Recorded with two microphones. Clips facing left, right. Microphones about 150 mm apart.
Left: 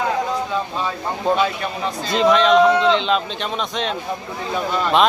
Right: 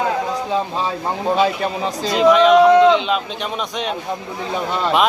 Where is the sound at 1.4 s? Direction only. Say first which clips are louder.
Right 3 dB; 35° right (ahead or behind).